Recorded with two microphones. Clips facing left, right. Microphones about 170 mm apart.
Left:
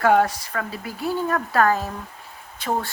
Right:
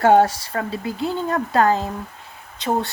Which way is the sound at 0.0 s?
30° right (ahead or behind).